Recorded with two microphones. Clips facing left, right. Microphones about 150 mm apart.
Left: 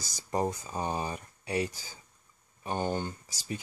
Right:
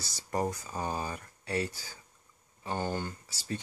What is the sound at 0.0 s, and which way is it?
Speech, 15° left (ahead or behind).